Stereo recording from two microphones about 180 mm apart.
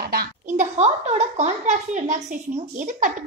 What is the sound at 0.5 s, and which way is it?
A woman's voice, 35° right (ahead or behind).